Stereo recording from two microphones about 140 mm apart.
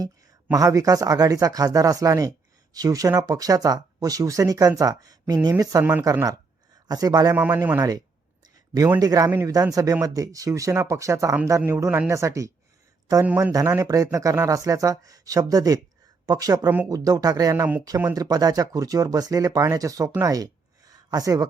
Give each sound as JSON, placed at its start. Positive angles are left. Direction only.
{"t": 0.5, "sound": "speech", "side_deg": -25}
{"t": 5.8, "sound": "speech", "side_deg": -10}
{"t": 6.1, "sound": "speech", "side_deg": -25}
{"t": 7.3, "sound": "speech", "side_deg": -15}
{"t": 7.8, "sound": "speech", "side_deg": -25}